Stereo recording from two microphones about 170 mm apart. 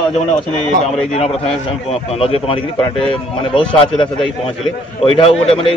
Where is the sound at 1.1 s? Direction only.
35° left (ahead or behind).